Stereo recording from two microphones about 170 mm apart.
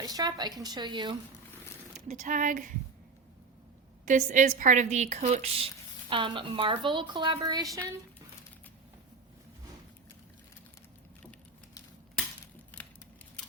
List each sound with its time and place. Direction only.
0.0 s a woman's voice: 25° right (ahead or behind)
2.0 s a woman's voice: 50° right (ahead or behind)
4.0 s a woman's voice: 50° right (ahead or behind)
6.1 s a woman's voice: 30° right (ahead or behind)
12.7 s scissors: 10° left (ahead or behind)